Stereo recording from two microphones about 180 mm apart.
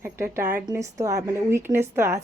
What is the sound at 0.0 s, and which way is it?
A woman's voice, 15° right (ahead or behind).